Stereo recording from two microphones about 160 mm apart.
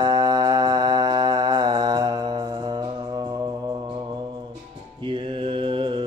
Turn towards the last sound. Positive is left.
turn(degrees=-30)  # may be behind; listen again after turning